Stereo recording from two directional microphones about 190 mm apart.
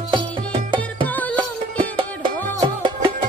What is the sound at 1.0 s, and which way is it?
Music, 10° left (ahead or behind).